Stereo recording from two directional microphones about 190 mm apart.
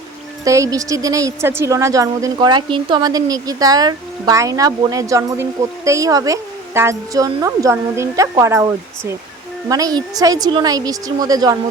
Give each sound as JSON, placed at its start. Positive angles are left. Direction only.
{"t": 0.4, "sound": "a woman's voice", "side_deg": -15}